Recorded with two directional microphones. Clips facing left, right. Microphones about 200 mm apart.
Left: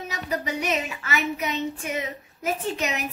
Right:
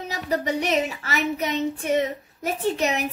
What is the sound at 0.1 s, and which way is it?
Speech, 35° right (ahead or behind).